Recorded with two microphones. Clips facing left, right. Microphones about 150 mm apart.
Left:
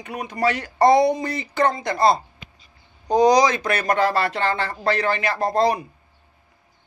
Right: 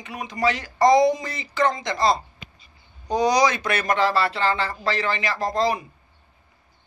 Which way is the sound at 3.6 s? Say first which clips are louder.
Left 2 dB; 35° left (ahead or behind).